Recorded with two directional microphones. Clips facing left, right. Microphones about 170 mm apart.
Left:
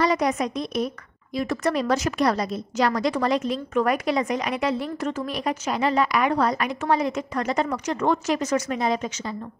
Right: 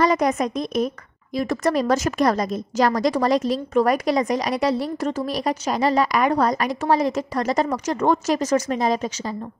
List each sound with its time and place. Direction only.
0.0 s a woman's voice: 45° right (ahead or behind)